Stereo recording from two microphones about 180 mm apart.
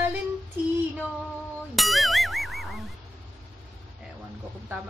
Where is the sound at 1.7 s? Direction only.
Centre (ahead or behind).